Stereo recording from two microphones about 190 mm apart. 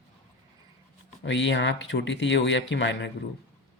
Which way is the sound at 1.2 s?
70° left (ahead or behind).